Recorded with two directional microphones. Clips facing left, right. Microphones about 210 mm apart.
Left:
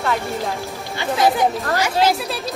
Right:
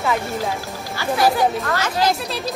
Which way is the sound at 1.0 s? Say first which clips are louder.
Even; 20° left (ahead or behind).